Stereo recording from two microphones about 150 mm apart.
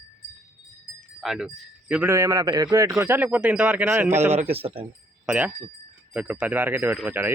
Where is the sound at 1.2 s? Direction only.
5° right (ahead or behind).